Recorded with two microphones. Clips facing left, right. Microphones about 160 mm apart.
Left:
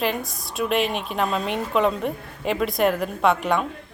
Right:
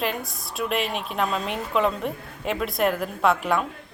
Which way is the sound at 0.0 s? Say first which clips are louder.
Left 3 dB; centre (ahead or behind).